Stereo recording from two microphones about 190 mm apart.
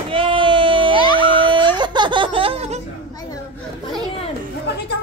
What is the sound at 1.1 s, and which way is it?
Laughter, 25° right (ahead or behind).